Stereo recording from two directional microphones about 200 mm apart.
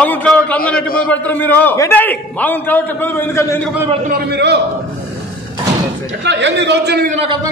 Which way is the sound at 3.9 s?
40° right (ahead or behind).